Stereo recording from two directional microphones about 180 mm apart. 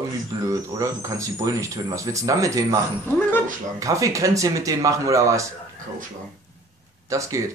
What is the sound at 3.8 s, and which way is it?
A man's voice, 20° right (ahead or behind).